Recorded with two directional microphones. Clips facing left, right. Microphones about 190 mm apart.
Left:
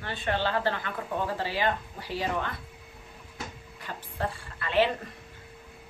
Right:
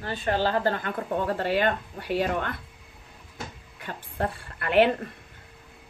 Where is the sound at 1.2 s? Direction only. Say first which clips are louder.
Right 5 dB; 60° right (ahead or behind).